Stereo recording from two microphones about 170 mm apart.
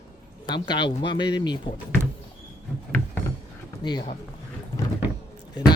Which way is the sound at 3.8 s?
25° left (ahead or behind).